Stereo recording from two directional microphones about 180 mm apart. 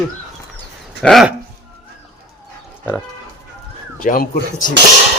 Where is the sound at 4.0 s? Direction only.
50° left (ahead or behind).